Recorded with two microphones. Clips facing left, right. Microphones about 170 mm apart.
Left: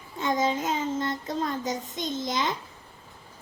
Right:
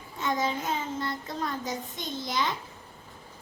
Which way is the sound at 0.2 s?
20° left (ahead or behind).